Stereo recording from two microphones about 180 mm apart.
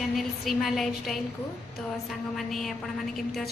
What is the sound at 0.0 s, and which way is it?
A woman's voice, centre (ahead or behind).